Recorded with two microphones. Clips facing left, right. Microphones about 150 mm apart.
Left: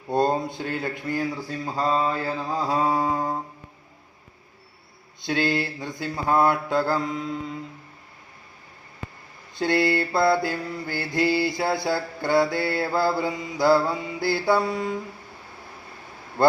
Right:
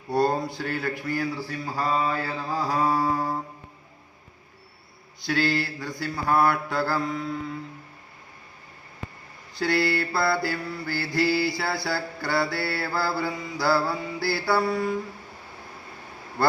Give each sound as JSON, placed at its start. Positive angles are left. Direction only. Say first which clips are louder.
{"t": 0.1, "sound": "mantra", "louder": "left 1 dB", "side_deg": 20}
{"t": 5.2, "sound": "mantra", "louder": "left 1 dB", "side_deg": 20}
{"t": 9.6, "sound": "mantra", "louder": "left 2 dB", "side_deg": 20}